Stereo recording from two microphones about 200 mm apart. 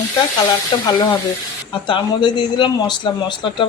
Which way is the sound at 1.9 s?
25° left (ahead or behind).